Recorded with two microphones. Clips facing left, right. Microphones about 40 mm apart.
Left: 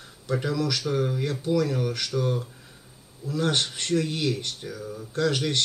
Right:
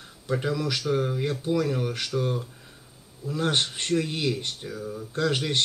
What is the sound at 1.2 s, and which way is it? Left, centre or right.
A man's voice, right.